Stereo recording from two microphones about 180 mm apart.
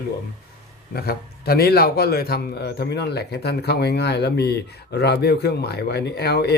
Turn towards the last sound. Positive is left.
turn(degrees=65)  # may be behind; listen again after turning